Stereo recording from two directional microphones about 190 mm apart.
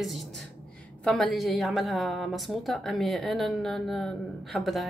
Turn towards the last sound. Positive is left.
turn(degrees=0)  # may be behind; listen again after turning